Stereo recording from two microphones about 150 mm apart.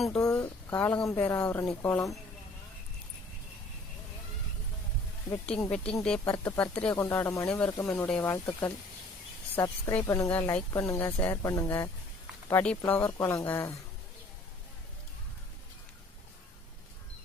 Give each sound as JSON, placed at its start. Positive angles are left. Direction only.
{"t": 0.2, "sound": "speech", "side_deg": 20}
{"t": 5.7, "sound": "speech", "side_deg": 5}
{"t": 6.1, "sound": "speech", "side_deg": 20}